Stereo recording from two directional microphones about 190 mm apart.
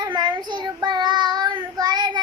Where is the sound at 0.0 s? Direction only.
25° right (ahead or behind).